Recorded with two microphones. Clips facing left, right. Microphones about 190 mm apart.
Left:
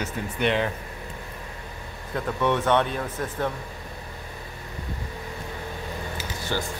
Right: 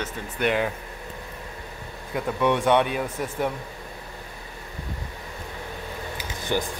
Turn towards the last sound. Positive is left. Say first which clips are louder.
# right 2 dB
turn(degrees=-15)  # may be behind; listen again after turning